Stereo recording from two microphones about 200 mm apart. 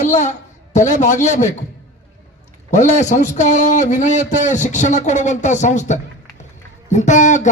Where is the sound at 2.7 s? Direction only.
35° left (ahead or behind).